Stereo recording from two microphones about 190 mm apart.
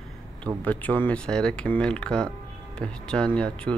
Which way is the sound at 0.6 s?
10° left (ahead or behind).